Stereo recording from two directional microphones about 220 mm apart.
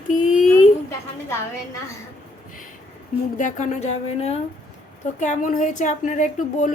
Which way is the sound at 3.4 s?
35° left (ahead or behind).